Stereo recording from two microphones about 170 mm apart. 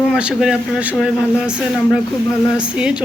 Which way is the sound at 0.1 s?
5° right (ahead or behind).